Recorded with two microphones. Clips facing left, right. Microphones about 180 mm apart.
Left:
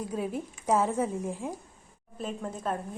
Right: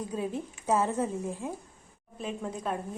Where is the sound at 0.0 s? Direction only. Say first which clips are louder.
Left 1 dB; 10° left (ahead or behind).